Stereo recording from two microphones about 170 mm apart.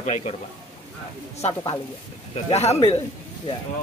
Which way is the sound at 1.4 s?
40° left (ahead or behind).